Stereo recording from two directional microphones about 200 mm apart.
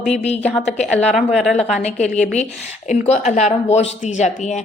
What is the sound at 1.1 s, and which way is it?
Speech, centre (ahead or behind).